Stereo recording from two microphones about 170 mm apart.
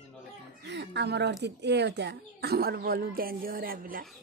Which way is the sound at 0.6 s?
90° right.